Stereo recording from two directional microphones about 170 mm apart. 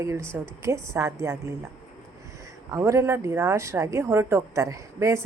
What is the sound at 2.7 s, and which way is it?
Speech, 15° right (ahead or behind).